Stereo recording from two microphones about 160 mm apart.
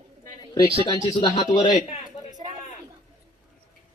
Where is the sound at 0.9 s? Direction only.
30° left (ahead or behind).